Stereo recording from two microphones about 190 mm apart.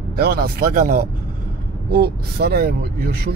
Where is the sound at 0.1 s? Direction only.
55° right (ahead or behind).